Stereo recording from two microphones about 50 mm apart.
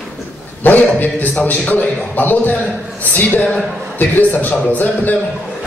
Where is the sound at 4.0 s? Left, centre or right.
Left.